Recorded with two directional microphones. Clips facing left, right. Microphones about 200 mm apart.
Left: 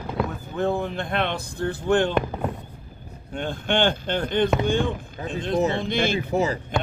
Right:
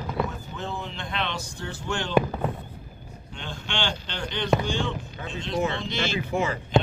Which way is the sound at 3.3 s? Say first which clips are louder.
Left 10 dB; 55° left (ahead or behind).